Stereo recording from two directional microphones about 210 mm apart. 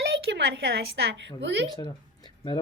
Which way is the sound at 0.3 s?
55° right (ahead or behind).